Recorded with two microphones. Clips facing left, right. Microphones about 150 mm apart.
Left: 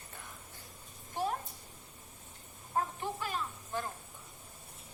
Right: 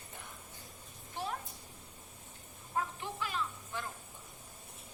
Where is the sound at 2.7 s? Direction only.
40° left (ahead or behind).